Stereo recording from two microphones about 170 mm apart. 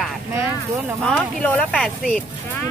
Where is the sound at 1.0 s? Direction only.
10° left (ahead or behind).